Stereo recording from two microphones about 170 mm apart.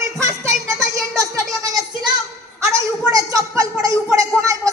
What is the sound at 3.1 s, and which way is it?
Speech, 20° right (ahead or behind).